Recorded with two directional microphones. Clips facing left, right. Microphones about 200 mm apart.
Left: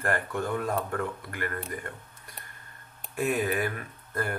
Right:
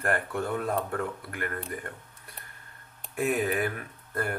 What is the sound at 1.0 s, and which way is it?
Speech, 5° right (ahead or behind).